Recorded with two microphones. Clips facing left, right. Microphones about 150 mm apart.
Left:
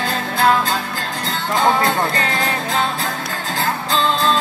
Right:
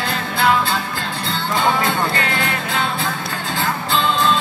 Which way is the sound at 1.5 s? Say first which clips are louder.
Left 2 dB; 40° left (ahead or behind).